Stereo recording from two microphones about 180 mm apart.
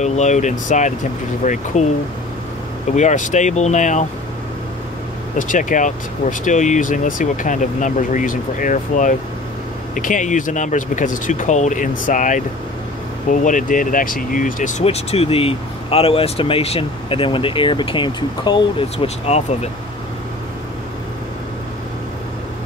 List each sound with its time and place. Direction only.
0.0 s speech: 40° left (ahead or behind)
3.0 s speech: 40° left (ahead or behind)
5.4 s speech: 45° left (ahead or behind)